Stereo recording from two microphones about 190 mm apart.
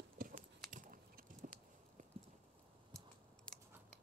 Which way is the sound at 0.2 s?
50° right (ahead or behind).